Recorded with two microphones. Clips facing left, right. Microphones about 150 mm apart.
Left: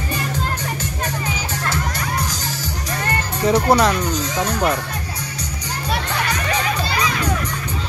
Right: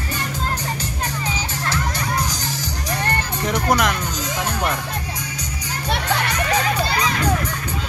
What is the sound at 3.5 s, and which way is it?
Music, 30° left (ahead or behind).